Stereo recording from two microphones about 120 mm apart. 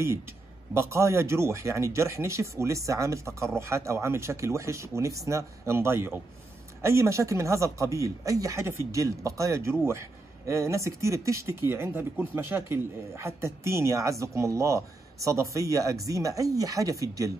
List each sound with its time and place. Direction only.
0.7 s speech: 25° right (ahead or behind)